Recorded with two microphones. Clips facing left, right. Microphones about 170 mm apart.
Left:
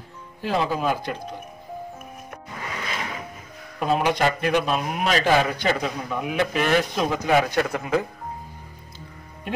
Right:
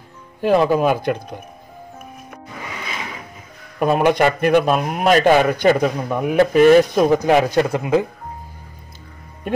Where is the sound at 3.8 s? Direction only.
55° right (ahead or behind); by 8.1 s 20° right (ahead or behind).